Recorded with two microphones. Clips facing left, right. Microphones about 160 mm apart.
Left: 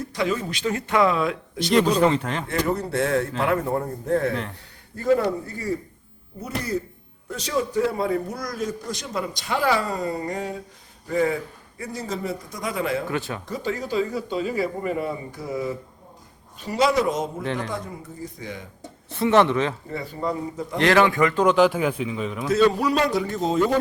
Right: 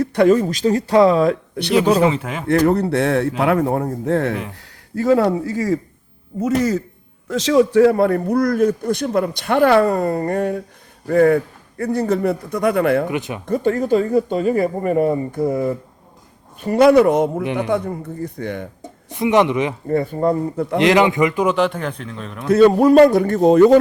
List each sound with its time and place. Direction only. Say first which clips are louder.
0.0 s speech: right 11 dB; 55° right (ahead or behind); by 1.4 s 40° right (ahead or behind)
2.0 s speech: right 2 dB; 5° right (ahead or behind)
2.5 s speech: right 11 dB; 65° right (ahead or behind)
4.9 s a man's voice: right 6 dB; 90° right; by 13.1 s 60° right (ahead or behind)
13.1 s speech: right 4 dB; 15° right (ahead or behind)
13.4 s a man's voice: right 10 dB; 55° right (ahead or behind)
19.0 s speech: right 3 dB; 15° right (ahead or behind)
19.9 s a man's voice: right 10 dB; 55° right (ahead or behind)
20.7 s a man's voice: right 4 dB; 20° right (ahead or behind)
21.4 s speech: even; centre (ahead or behind)
22.4 s a man's voice: right 8 dB; 55° right (ahead or behind); by 23.8 s 70° right (ahead or behind)